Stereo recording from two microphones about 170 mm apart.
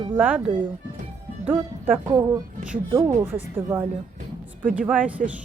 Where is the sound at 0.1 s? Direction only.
10° right (ahead or behind).